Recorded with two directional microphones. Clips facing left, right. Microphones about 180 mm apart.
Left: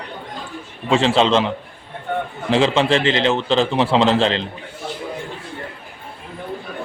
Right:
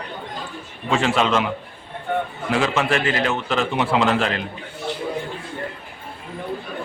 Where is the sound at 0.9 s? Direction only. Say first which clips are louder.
Left 4 dB; 30° left (ahead or behind).